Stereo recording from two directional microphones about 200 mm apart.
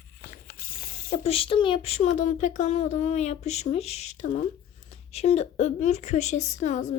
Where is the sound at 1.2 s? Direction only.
30° left (ahead or behind).